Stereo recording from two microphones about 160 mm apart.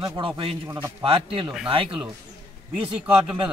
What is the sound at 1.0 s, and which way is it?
Speech, 35° right (ahead or behind).